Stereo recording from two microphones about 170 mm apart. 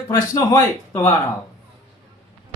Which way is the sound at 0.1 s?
20° left (ahead or behind).